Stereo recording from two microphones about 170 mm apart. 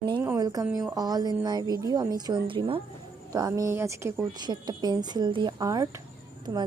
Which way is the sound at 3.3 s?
20° right (ahead or behind).